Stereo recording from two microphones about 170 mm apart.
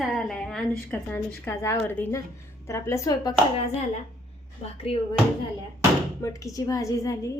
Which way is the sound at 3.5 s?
35° left (ahead or behind).